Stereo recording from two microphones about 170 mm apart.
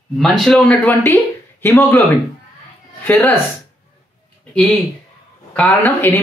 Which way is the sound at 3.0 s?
10° left (ahead or behind).